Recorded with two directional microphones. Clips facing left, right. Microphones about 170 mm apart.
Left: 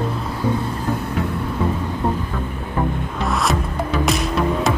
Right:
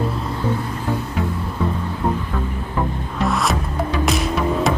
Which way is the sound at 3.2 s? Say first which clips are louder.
Right 1 dB; centre (ahead or behind).